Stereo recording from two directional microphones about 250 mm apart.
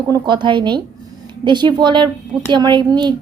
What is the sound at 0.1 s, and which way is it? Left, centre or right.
A woman's voice, centre.